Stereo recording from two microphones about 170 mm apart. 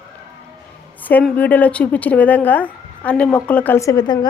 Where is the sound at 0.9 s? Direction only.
10° left (ahead or behind); by 4.3 s 25° left (ahead or behind).